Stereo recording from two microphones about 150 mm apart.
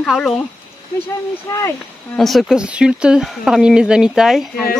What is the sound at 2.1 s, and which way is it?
Speech, centre (ahead or behind).